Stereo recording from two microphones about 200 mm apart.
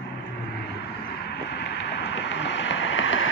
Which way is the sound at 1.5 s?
60° left (ahead or behind).